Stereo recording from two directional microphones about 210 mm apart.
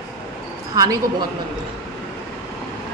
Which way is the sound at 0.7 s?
15° right (ahead or behind).